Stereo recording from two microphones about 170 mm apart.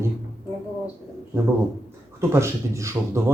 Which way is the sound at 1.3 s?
15° right (ahead or behind).